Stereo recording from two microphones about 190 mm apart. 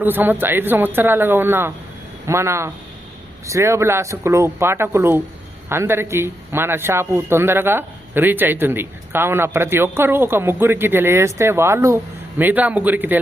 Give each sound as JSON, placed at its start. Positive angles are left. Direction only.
{"t": 0.0, "sound": "speech", "side_deg": -10}